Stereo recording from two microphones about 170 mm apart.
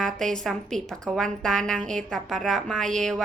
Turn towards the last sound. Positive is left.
turn(degrees=5)  # may be behind; listen again after turning